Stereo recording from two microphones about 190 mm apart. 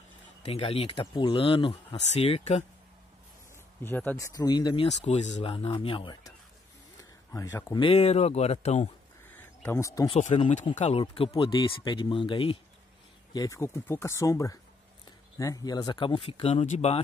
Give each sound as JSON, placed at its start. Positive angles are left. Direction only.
{"t": 0.4, "sound": "speech", "side_deg": 30}
{"t": 3.8, "sound": "speech", "side_deg": 10}
{"t": 4.8, "sound": "speech", "side_deg": 35}
{"t": 7.0, "sound": "a sound", "side_deg": 15}
{"t": 7.7, "sound": "speech", "side_deg": 30}
{"t": 9.3, "sound": "a sound", "side_deg": 10}
{"t": 10.0, "sound": "speech", "side_deg": 30}